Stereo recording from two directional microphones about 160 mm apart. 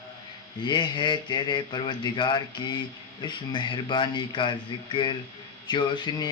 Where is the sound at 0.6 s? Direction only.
25° left (ahead or behind).